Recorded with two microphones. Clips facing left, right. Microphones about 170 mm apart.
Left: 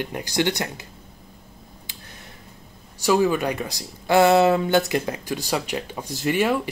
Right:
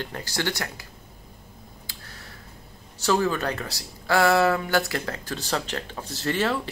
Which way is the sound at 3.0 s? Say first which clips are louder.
Left 4 dB; 10° left (ahead or behind).